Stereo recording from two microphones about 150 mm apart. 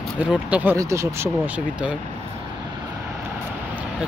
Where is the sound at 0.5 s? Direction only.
10° right (ahead or behind).